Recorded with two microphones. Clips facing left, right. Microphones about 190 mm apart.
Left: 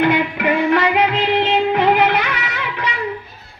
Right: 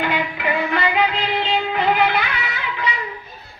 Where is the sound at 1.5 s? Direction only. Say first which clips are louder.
Left 3 dB; 80° left.